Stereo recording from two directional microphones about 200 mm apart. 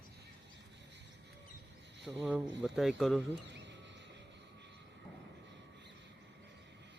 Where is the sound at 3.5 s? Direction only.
60° right (ahead or behind).